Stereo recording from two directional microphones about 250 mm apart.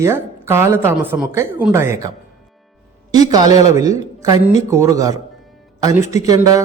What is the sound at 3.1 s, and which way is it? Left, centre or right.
A man's voice, centre.